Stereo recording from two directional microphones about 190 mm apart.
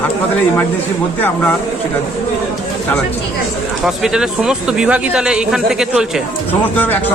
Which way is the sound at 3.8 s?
Centre (ahead or behind).